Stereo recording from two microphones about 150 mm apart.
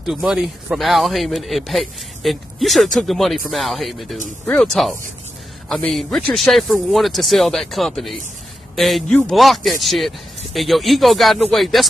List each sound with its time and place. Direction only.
0.0 s speech: 5° right (ahead or behind)